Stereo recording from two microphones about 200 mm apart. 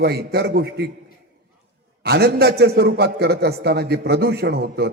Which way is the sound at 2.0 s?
55° right (ahead or behind).